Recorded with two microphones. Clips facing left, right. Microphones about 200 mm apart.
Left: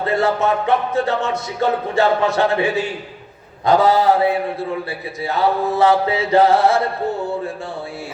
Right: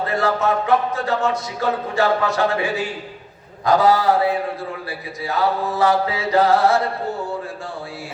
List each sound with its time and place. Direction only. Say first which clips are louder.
0.0 s music: left 2 dB; 25° left (ahead or behind)